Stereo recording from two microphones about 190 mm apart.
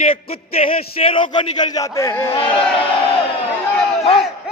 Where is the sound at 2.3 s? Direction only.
30° left (ahead or behind).